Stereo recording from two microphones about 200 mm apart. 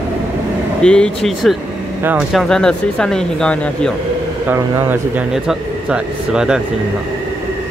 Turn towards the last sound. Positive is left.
turn(degrees=-5)  # may be behind; listen again after turning